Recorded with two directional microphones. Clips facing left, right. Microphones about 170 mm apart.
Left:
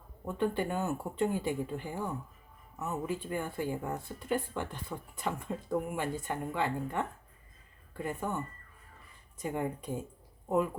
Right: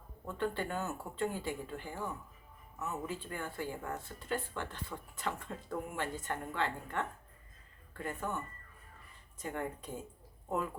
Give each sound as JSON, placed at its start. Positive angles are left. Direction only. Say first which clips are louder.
{"t": 0.3, "sound": "speech", "louder": "left 5 dB", "side_deg": 15}
{"t": 9.4, "sound": "speech", "louder": "left 5 dB", "side_deg": 15}